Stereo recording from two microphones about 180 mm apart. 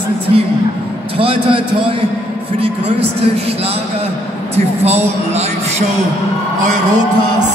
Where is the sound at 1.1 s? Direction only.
30° right (ahead or behind).